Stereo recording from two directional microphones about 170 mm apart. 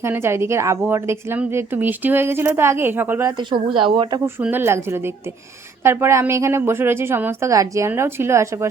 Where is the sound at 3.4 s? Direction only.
30° right (ahead or behind).